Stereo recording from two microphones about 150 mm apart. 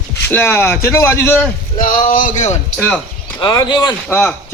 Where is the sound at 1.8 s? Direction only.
60° left (ahead or behind).